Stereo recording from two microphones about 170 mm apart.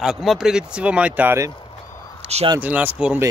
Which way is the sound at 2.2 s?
40° right (ahead or behind).